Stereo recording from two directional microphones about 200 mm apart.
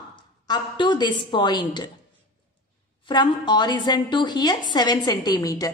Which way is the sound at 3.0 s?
20° left (ahead or behind).